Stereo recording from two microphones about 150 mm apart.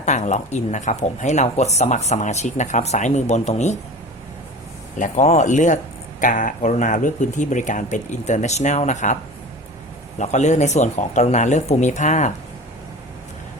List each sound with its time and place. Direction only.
0.0 s speech: 50° left (ahead or behind)
4.9 s speech: 55° left (ahead or behind)
10.2 s speech: 50° left (ahead or behind)